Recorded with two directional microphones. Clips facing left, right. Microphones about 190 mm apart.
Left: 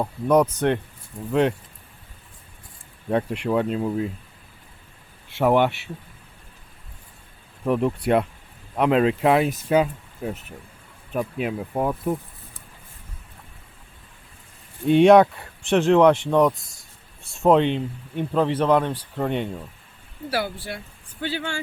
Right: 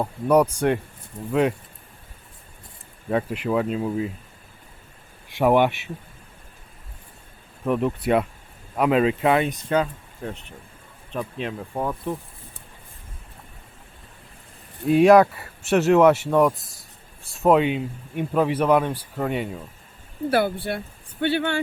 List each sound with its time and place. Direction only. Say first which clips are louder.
0.0 s speech: even; 10° right (ahead or behind)
3.1 s speech: left 1 dB; centre (ahead or behind)
5.3 s speech: right 1 dB; 15° right (ahead or behind)
7.6 s speech: left 1 dB; centre (ahead or behind)
14.8 s speech: left 1 dB; centre (ahead or behind)
20.3 s speech: right 5 dB; 55° right (ahead or behind)